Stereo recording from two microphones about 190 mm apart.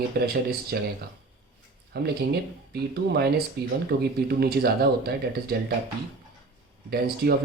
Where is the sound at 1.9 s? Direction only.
55° right (ahead or behind).